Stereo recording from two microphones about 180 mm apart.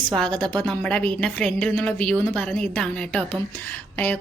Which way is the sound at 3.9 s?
10° left (ahead or behind).